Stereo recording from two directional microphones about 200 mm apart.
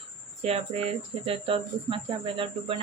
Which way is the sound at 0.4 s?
30° right (ahead or behind).